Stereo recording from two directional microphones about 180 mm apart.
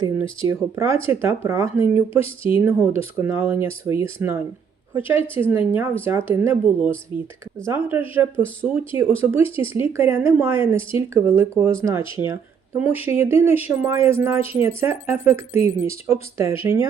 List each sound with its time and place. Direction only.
0.0 s speech: 15° right (ahead or behind)
2.2 s speech: 30° left (ahead or behind)
2.6 s speech: 10° right (ahead or behind)
7.1 s speech: 25° left (ahead or behind)
7.7 s speech: 10° right (ahead or behind)